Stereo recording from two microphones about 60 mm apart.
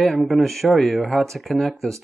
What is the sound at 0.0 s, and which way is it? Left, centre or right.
Speech, centre.